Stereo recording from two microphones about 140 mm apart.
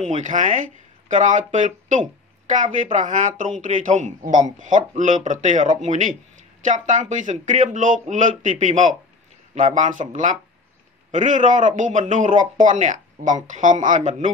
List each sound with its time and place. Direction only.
0.0 s speech: 60° right (ahead or behind)